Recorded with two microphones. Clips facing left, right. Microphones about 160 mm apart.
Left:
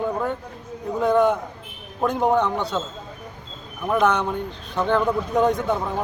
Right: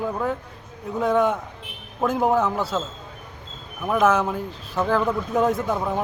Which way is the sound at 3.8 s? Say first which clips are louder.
Right 1 dB; 5° right (ahead or behind).